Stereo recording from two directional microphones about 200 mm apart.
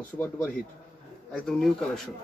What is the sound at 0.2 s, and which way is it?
A man's voice, 5° left (ahead or behind).